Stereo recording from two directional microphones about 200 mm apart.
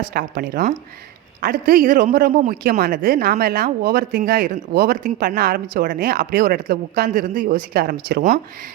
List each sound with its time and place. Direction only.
0.1 s a man's voice: 50° right (ahead or behind)